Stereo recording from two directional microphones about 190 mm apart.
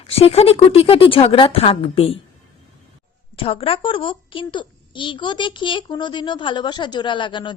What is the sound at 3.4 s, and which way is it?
A child's voice, 30° left (ahead or behind).